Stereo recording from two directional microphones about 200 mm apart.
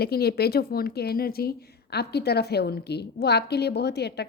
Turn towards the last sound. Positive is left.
turn(degrees=55)  # may be behind; listen again after turning